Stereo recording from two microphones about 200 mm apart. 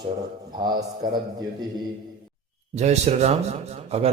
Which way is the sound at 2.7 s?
35° right (ahead or behind).